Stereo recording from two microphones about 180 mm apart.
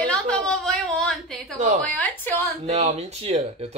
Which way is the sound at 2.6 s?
35° right (ahead or behind).